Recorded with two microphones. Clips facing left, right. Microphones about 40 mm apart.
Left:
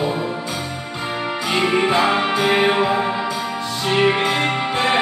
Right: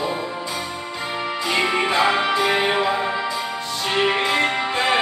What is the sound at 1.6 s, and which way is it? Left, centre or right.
Music, left.